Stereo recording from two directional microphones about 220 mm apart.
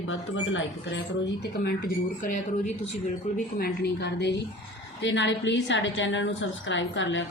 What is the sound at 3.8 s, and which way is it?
A woman's voice, 50° left (ahead or behind).